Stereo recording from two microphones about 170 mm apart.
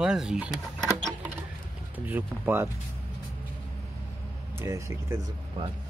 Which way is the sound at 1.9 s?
10° right (ahead or behind).